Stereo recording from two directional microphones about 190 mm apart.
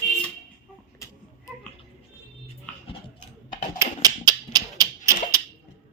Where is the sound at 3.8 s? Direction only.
20° right (ahead or behind).